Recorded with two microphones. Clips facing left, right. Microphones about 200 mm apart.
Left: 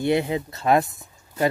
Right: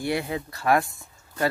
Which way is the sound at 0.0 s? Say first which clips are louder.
Left 5 dB; 20° left (ahead or behind).